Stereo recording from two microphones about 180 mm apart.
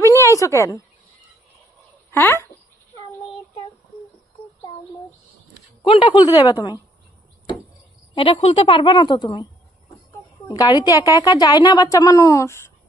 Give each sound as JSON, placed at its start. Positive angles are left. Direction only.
{"t": 0.0, "sound": "a sound", "side_deg": 15}
{"t": 2.0, "sound": "speech", "side_deg": 15}
{"t": 5.8, "sound": "a woman's voice", "side_deg": 30}
{"t": 8.1, "sound": "a woman's voice", "side_deg": 30}
{"t": 10.5, "sound": "a woman's voice", "side_deg": 20}